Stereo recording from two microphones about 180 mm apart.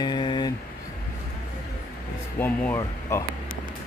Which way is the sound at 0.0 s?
25° left (ahead or behind).